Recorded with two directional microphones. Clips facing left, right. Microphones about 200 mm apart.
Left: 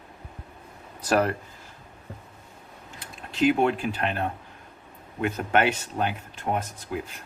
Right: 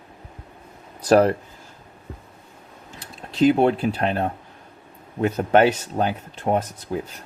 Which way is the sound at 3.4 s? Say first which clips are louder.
Right 5 dB; 35° right (ahead or behind).